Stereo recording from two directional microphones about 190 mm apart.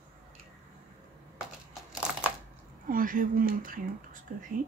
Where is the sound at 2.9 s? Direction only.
45° right (ahead or behind).